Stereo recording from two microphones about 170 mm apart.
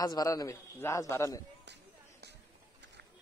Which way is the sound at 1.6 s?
85° right.